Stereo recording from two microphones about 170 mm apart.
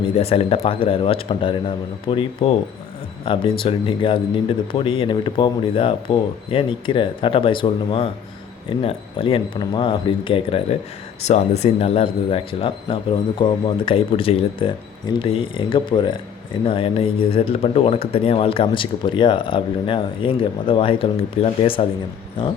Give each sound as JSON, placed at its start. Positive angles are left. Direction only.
{"t": 0.2, "sound": "speech", "side_deg": 35}